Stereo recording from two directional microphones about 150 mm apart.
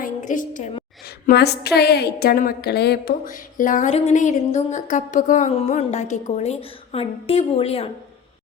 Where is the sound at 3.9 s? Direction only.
55° left (ahead or behind).